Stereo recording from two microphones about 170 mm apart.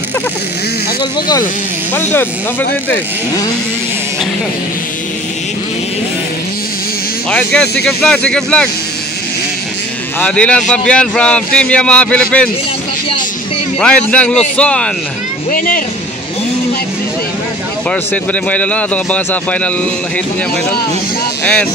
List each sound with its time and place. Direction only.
7.2 s a man's voice: 5° left (ahead or behind)
10.2 s a man's voice: 5° left (ahead or behind)
13.7 s a man's voice: 5° left (ahead or behind)
15.5 s speech: 55° left (ahead or behind)
17.8 s a man's voice: 10° left (ahead or behind)